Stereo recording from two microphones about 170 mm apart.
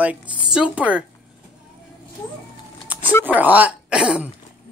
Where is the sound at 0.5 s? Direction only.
5° right (ahead or behind).